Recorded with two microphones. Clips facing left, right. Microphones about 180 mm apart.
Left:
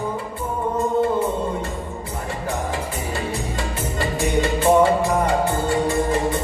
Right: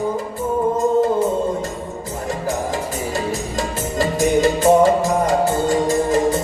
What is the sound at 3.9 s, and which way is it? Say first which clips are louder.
Music: right 5 dB; 40° right (ahead or behind).